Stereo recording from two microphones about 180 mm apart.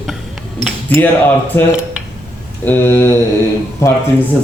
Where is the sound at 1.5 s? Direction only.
15° left (ahead or behind).